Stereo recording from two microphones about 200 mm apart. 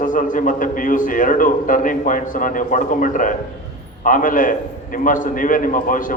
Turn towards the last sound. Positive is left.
turn(degrees=40)  # may be behind; listen again after turning